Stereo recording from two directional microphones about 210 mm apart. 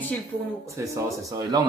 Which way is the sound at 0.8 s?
15° right (ahead or behind).